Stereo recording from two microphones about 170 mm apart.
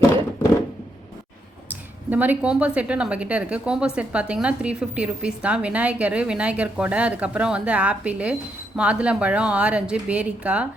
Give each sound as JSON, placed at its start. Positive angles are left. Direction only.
{"t": 2.0, "sound": "a woman's voice", "side_deg": -10}